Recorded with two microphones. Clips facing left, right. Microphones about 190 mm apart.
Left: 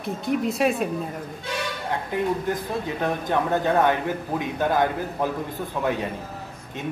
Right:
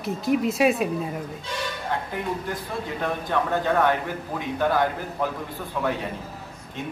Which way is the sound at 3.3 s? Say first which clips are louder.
Left 1 dB; 20° left (ahead or behind).